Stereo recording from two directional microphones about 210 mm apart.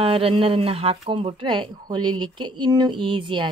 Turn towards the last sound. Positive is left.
turn(degrees=-25)  # may be behind; listen again after turning